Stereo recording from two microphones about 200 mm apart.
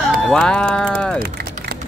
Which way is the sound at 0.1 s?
5° left (ahead or behind).